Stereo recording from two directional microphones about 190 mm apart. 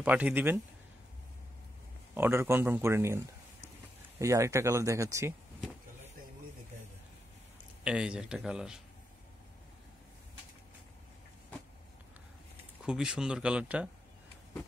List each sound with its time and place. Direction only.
0.0 s speech: 5° right (ahead or behind)
2.1 s speech: 10° right (ahead or behind)
4.2 s speech: 15° right (ahead or behind)
7.8 s speech: 5° right (ahead or behind)
12.8 s speech: 5° right (ahead or behind)